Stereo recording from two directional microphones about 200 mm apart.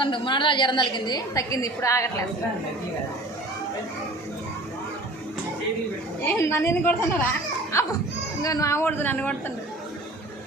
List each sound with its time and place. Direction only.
0.0 s a woman's voice: 25° left (ahead or behind)
6.2 s a woman's voice: 10° left (ahead or behind)